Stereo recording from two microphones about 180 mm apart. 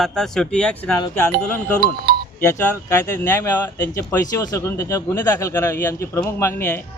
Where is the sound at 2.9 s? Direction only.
15° left (ahead or behind).